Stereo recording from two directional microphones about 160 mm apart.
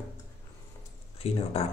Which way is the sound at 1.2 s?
35° left (ahead or behind).